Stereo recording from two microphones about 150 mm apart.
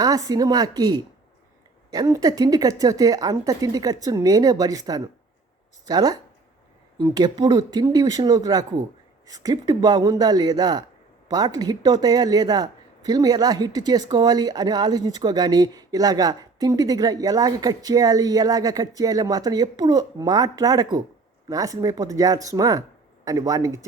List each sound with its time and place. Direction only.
0.0 s speech: 25° right (ahead or behind)